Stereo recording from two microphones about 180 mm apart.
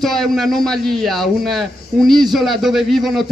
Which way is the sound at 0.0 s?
Centre (ahead or behind).